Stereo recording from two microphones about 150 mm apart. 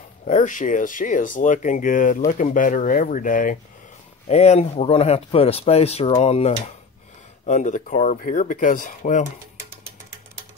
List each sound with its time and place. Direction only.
0.2 s speech: 60° left (ahead or behind)
4.3 s speech: 45° left (ahead or behind)